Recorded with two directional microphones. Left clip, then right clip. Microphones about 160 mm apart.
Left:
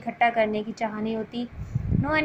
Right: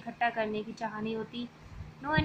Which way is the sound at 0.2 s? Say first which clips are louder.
Left 9 dB; 15° left (ahead or behind).